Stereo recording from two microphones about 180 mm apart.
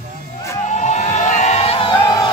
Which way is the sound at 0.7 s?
40° left (ahead or behind).